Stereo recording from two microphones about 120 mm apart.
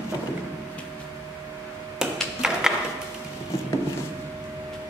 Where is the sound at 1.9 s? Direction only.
5° right (ahead or behind).